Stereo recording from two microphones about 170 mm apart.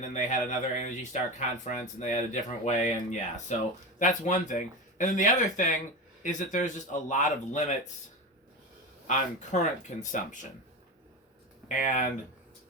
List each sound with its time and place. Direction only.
0.0 s speech: 45° left (ahead or behind)
9.0 s speech: 45° left (ahead or behind)
11.7 s speech: 50° left (ahead or behind)